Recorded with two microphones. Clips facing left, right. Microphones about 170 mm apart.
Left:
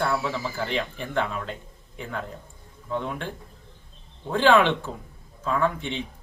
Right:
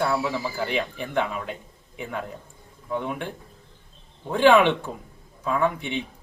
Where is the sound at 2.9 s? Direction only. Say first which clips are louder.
Right 1 dB; 15° right (ahead or behind).